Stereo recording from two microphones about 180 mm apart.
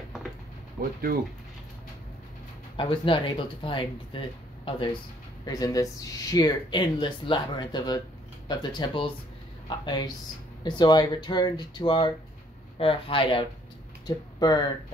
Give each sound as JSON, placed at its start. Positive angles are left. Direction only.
{"t": 2.8, "sound": "speech", "side_deg": 30}